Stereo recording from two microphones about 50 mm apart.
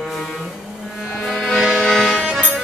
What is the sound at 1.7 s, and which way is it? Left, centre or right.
Music, centre.